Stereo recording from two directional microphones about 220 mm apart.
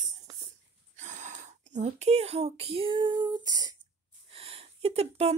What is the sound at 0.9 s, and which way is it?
Speech, 35° right (ahead or behind).